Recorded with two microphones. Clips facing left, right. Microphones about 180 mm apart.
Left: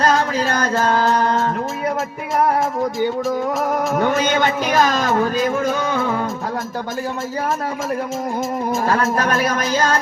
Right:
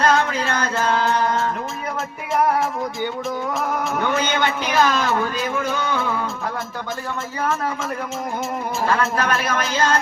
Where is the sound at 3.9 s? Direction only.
45° left (ahead or behind).